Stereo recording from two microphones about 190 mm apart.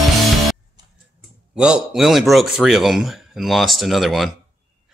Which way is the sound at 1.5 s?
5° right (ahead or behind).